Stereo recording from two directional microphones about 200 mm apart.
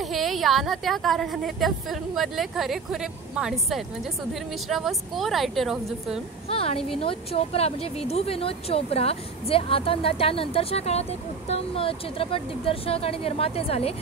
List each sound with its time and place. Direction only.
0.0 s a woman's voice: centre (ahead or behind)
6.5 s speech: 30° left (ahead or behind)